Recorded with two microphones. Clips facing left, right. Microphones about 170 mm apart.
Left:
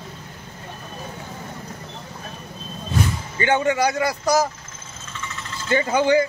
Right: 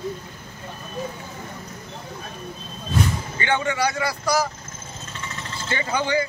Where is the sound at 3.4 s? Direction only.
45° left (ahead or behind).